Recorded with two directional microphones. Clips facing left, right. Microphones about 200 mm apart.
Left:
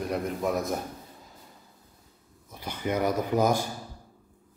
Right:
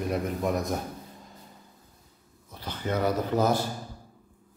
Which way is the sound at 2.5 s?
10° left (ahead or behind).